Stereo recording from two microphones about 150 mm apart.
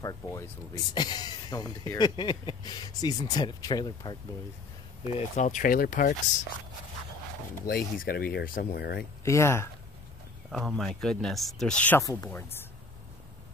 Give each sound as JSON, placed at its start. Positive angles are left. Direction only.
{"t": 0.0, "sound": "speech", "side_deg": 20}
{"t": 5.0, "sound": "speech", "side_deg": 45}
{"t": 7.6, "sound": "speech", "side_deg": 85}
{"t": 9.2, "sound": "speech", "side_deg": 20}
{"t": 10.5, "sound": "speech", "side_deg": 0}
{"t": 12.0, "sound": "speech", "side_deg": 20}